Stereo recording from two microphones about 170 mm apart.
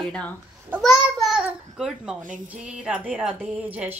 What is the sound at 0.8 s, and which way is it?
Babbling, centre (ahead or behind).